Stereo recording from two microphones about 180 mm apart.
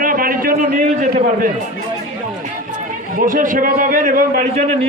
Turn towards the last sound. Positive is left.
turn(degrees=-50)  # may be behind; listen again after turning